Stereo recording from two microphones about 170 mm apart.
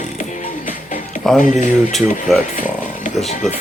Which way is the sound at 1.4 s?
45° left (ahead or behind).